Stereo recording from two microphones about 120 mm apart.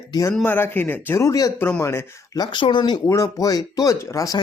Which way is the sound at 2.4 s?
40° left (ahead or behind).